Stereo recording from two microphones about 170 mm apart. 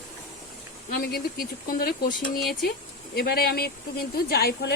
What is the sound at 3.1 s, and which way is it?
Speech, 70° left (ahead or behind).